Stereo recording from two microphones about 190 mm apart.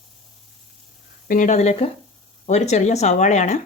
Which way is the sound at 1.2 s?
45° left (ahead or behind).